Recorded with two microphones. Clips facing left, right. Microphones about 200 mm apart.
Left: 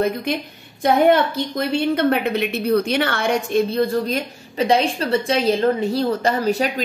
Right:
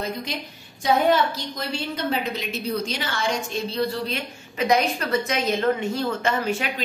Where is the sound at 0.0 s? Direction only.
60° left (ahead or behind).